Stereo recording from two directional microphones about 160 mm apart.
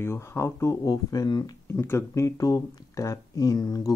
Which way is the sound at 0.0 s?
15° left (ahead or behind).